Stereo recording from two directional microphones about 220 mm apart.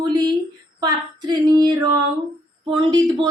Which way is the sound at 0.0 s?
20° right (ahead or behind).